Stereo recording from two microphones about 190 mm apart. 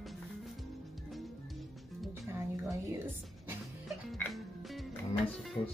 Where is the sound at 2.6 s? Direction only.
5° right (ahead or behind).